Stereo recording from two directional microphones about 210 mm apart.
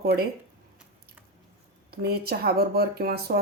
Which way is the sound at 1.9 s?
45° right (ahead or behind).